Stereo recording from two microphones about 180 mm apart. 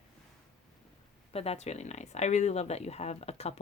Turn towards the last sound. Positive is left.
turn(degrees=35)  # may be behind; listen again after turning